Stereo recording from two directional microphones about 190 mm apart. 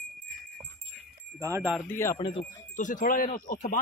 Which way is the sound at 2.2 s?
30° left (ahead or behind).